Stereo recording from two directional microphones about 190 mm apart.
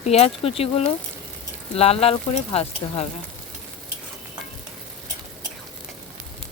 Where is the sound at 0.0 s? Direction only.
35° left (ahead or behind).